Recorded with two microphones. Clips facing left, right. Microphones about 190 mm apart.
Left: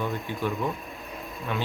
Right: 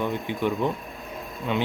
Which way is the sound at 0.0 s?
20° right (ahead or behind).